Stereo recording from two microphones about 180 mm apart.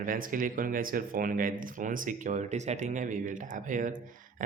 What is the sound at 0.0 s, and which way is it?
Speech, 50° right (ahead or behind).